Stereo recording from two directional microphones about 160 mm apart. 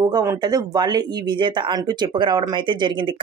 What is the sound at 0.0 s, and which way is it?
Speech, 25° right (ahead or behind).